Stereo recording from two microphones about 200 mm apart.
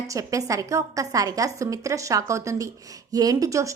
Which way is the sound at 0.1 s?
15° right (ahead or behind).